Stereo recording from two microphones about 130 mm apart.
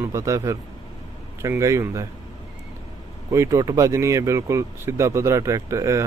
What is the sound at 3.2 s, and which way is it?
Speech, 25° right (ahead or behind).